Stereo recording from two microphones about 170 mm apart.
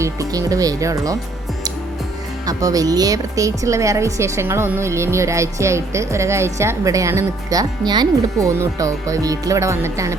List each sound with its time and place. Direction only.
0.0 s speech: 20° right (ahead or behind)
2.5 s a woman's voice: 20° right (ahead or behind)